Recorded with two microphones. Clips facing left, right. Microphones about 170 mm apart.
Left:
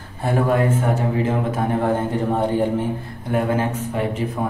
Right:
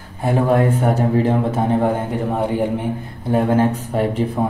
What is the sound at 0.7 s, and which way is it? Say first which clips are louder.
A man's voice: right 4 dB; 35° right (ahead or behind).